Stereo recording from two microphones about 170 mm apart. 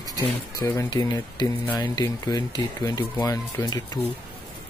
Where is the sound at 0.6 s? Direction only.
20° left (ahead or behind).